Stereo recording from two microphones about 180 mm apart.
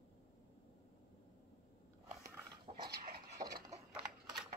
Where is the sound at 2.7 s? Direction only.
35° right (ahead or behind).